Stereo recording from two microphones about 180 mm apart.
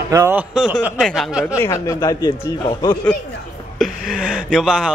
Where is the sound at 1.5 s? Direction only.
20° left (ahead or behind).